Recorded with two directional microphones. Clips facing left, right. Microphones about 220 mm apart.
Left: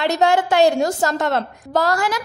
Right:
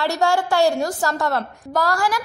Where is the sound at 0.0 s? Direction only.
20° left (ahead or behind).